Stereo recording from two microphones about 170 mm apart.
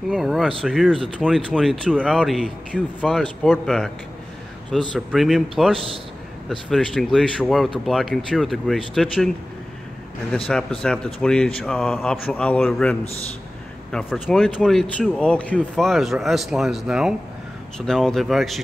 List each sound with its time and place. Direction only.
0.1 s speech: centre (ahead or behind)
10.5 s speech: 5° left (ahead or behind)
13.9 s speech: centre (ahead or behind)